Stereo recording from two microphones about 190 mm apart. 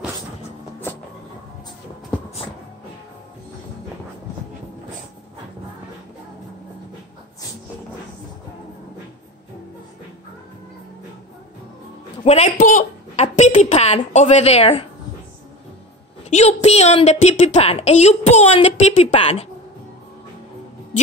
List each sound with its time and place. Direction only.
12.3 s a woman's voice: 35° left (ahead or behind)
16.3 s a woman's voice: 35° left (ahead or behind)